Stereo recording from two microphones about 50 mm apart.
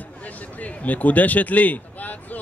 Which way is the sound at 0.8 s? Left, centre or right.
Left.